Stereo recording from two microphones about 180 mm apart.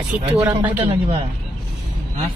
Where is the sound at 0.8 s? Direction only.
30° right (ahead or behind).